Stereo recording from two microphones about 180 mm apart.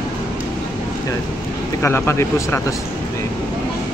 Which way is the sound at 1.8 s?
15° left (ahead or behind).